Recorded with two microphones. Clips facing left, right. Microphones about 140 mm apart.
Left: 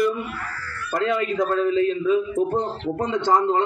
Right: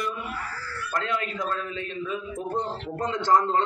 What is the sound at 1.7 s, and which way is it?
Speech, 30° left (ahead or behind).